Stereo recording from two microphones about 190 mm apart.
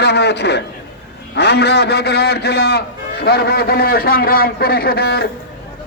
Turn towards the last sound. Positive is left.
turn(degrees=55)  # may be behind; listen again after turning